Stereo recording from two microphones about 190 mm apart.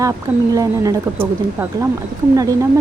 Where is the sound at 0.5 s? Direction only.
20° right (ahead or behind).